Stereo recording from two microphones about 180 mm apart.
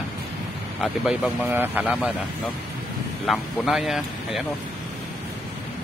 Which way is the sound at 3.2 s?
Centre (ahead or behind).